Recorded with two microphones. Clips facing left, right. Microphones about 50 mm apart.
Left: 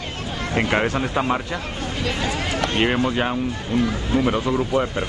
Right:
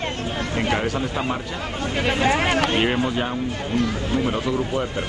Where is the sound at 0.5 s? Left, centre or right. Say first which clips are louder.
Left 3 dB; left.